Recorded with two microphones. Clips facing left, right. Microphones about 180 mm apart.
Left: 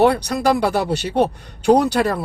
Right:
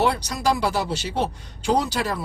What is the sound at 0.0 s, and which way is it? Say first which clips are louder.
Speech: left 6 dB; 60° left (ahead or behind).